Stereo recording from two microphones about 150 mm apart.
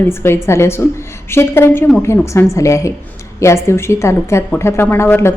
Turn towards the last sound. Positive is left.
turn(degrees=15)  # may be behind; listen again after turning